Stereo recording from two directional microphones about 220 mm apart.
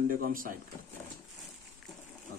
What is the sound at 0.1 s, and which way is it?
Speech, 40° right (ahead or behind).